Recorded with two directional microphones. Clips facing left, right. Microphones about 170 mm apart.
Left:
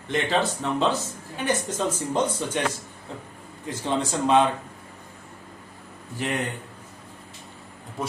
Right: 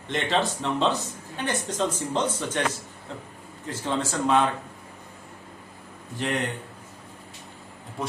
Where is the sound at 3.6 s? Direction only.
15° left (ahead or behind).